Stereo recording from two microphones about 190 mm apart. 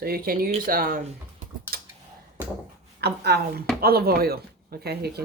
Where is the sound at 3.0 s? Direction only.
60° right (ahead or behind).